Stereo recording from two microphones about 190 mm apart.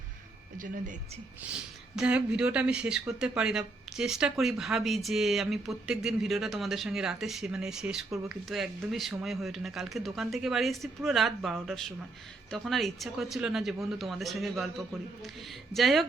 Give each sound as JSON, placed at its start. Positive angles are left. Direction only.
{"t": 0.5, "sound": "speech", "side_deg": -45}
{"t": 1.4, "sound": "speech", "side_deg": -5}
{"t": 15.7, "sound": "speech", "side_deg": 0}